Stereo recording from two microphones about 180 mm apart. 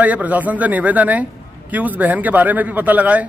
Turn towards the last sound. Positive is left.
turn(degrees=-10)  # may be behind; listen again after turning